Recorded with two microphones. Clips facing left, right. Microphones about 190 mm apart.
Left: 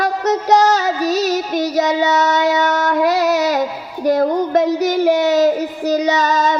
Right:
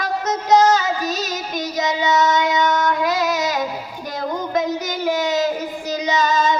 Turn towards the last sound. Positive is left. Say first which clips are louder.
# left 2 dB
turn(degrees=65)  # may be behind; listen again after turning